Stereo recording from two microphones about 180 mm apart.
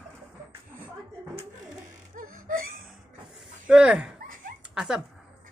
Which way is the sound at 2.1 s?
45° right (ahead or behind).